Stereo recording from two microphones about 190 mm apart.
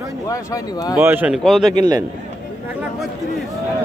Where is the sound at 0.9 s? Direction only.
10° right (ahead or behind).